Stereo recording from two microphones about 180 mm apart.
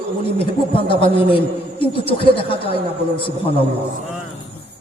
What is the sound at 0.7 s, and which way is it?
A man's voice, 30° left (ahead or behind).